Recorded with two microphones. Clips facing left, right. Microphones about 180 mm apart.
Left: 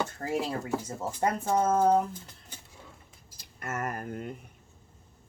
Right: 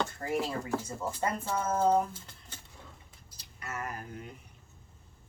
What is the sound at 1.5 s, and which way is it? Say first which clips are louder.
Speech: left 5 dB; 50° left (ahead or behind).